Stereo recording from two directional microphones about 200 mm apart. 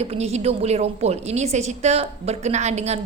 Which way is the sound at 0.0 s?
30° right (ahead or behind).